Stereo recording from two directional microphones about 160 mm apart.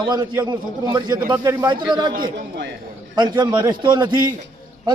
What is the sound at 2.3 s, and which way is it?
Speech, 90° right.